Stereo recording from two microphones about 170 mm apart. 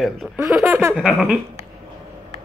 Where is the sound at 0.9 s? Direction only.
5° left (ahead or behind).